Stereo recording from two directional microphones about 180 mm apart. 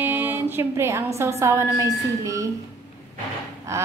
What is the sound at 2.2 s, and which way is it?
Speech, 15° right (ahead or behind).